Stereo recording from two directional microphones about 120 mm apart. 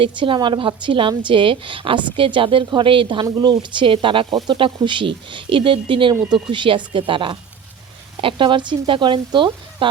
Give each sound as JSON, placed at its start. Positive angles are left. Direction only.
{"t": 0.0, "sound": "a woman's voice", "side_deg": -45}